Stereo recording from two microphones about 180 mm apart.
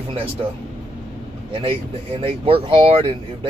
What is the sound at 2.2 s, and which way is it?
Speech, 30° right (ahead or behind).